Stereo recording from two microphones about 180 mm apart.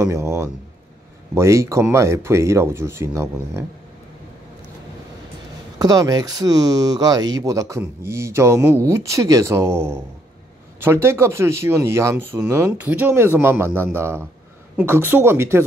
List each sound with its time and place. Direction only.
0.0 s speech: 15° right (ahead or behind)
5.8 s speech: 20° right (ahead or behind)